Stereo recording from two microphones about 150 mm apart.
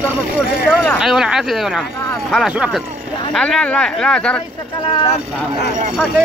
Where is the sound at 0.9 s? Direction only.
5° right (ahead or behind).